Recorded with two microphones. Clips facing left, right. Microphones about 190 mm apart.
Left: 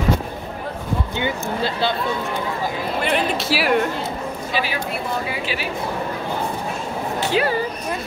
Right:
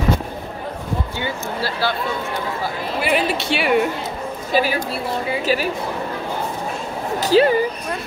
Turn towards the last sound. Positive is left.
turn(degrees=-35)  # may be behind; listen again after turning